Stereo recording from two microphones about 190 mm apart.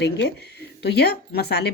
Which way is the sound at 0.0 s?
60° left (ahead or behind).